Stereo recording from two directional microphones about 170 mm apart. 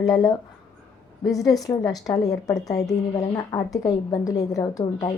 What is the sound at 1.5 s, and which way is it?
A woman's voice, 20° left (ahead or behind).